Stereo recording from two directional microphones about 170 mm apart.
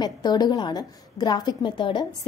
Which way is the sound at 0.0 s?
25° left (ahead or behind).